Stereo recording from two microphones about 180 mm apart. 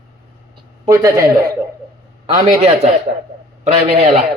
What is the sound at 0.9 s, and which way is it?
Speech, 15° right (ahead or behind).